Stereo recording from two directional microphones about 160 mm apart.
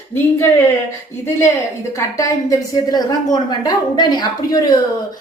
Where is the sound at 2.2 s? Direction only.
20° left (ahead or behind).